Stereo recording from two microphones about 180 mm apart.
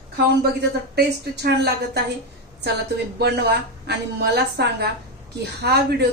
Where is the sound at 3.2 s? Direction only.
65° right (ahead or behind).